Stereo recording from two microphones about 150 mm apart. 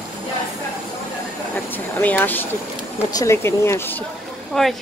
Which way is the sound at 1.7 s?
10° left (ahead or behind).